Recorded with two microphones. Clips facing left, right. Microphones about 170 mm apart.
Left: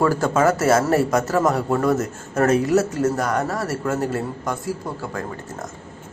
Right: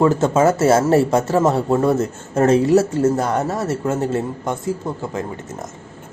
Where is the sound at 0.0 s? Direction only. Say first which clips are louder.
Right 3 dB; 20° right (ahead or behind).